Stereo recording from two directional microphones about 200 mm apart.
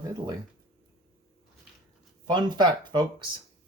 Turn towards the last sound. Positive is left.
turn(degrees=-20)  # may be behind; listen again after turning